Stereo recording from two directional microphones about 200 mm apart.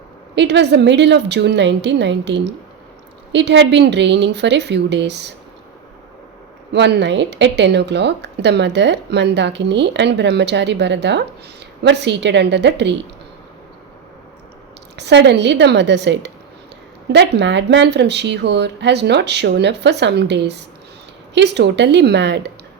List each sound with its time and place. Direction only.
0.3 s speech: 60° right (ahead or behind)
6.7 s speech: 60° right (ahead or behind)
14.9 s speech: 60° right (ahead or behind)